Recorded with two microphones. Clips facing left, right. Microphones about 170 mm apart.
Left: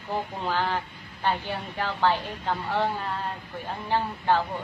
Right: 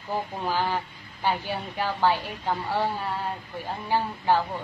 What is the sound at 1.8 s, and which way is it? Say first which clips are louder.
A woman's voice: right 1 dB; 10° right (ahead or behind).